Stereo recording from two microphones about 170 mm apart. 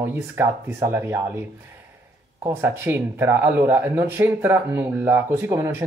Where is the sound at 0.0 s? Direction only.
15° right (ahead or behind).